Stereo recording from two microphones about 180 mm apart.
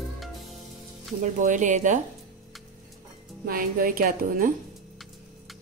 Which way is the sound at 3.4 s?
50° right (ahead or behind).